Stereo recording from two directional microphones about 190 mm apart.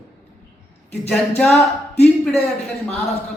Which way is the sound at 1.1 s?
5° left (ahead or behind).